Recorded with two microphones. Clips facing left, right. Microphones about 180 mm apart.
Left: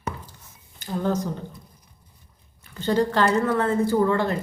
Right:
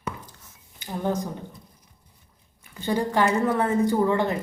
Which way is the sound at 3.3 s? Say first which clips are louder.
Left 1 dB; 15° right (ahead or behind).